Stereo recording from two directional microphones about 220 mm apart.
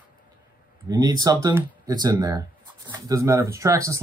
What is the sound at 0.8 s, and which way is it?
Speech, 15° right (ahead or behind).